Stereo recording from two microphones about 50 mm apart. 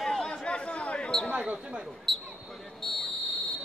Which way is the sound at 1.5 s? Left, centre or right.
Right.